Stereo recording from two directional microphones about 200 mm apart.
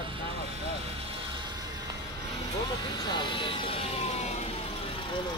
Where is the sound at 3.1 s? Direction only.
25° left (ahead or behind).